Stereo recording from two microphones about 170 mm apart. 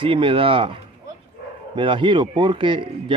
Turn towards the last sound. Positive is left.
turn(degrees=-30)  # may be behind; listen again after turning